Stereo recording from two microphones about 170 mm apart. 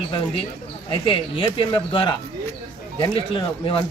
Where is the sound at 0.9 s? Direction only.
30° left (ahead or behind).